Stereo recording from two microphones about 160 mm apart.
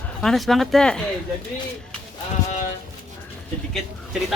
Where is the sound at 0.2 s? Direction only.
Centre (ahead or behind).